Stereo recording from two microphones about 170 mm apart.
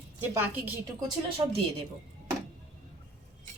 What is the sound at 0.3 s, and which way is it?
Speech, 10° right (ahead or behind).